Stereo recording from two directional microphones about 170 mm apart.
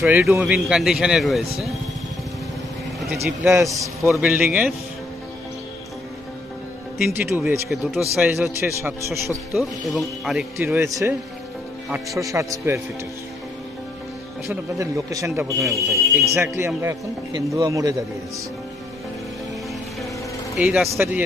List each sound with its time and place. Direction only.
0.3 s a man's voice: 5° right (ahead or behind)
3.2 s a man's voice: 15° right (ahead or behind)
4.1 s a man's voice: 5° right (ahead or behind)
7.1 s a man's voice: 15° right (ahead or behind)
8.5 s a man's voice: 15° right (ahead or behind)
9.6 s a man's voice: centre (ahead or behind)
10.6 s a man's voice: 15° right (ahead or behind)
14.5 s a man's voice: 20° right (ahead or behind)
15.6 s a man's voice: centre (ahead or behind)
16.3 s a man's voice: 15° right (ahead or behind)
20.6 s a man's voice: 5° right (ahead or behind)